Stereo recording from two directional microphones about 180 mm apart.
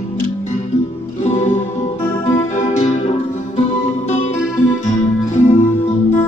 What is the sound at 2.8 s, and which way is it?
Music, 35° left (ahead or behind).